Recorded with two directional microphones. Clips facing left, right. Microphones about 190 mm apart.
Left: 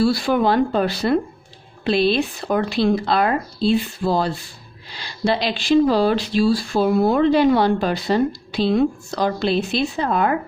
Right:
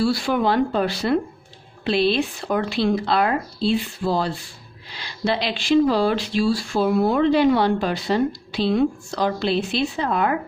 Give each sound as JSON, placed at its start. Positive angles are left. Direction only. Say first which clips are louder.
{"t": 0.0, "sound": "speech", "louder": "left 3 dB", "side_deg": 40}